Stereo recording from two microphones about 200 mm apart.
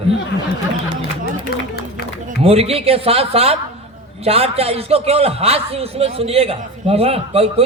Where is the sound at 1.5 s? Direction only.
50° left (ahead or behind).